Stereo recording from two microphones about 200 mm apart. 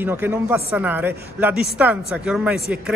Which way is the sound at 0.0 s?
10° right (ahead or behind).